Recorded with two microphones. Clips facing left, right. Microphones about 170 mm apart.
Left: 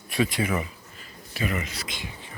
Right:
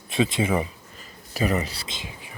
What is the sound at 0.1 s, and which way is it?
Speech, 25° right (ahead or behind).